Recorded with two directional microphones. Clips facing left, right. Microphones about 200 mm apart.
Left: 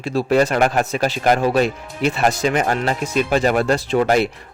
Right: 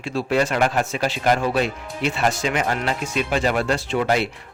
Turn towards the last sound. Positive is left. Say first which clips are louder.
# left 4 dB
turn(degrees=45)  # may be behind; listen again after turning